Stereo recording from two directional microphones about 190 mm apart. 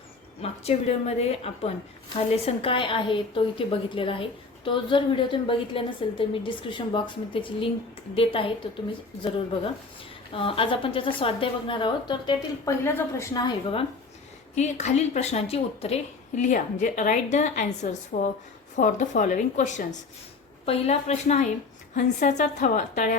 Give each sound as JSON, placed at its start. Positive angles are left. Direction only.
{"t": 0.4, "sound": "a woman's voice", "side_deg": 35}
{"t": 10.3, "sound": "a woman's voice", "side_deg": 30}
{"t": 14.5, "sound": "a woman's voice", "side_deg": 35}
{"t": 16.4, "sound": "a woman's voice", "side_deg": 40}